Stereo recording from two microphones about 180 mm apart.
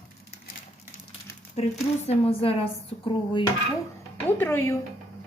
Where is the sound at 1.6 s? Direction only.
35° left (ahead or behind).